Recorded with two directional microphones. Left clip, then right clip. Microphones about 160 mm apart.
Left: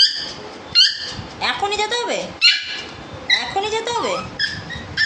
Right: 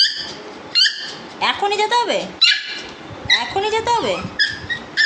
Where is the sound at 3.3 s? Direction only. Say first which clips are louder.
Right 3 dB; 15° right (ahead or behind).